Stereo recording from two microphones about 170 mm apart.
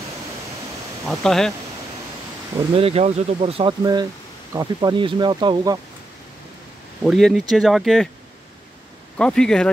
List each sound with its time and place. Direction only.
1.0 s speech: 5° left (ahead or behind)
2.7 s speech: 35° right (ahead or behind)
3.8 s speech: 25° right (ahead or behind)
7.0 s speech: centre (ahead or behind)
9.1 s speech: 5° left (ahead or behind)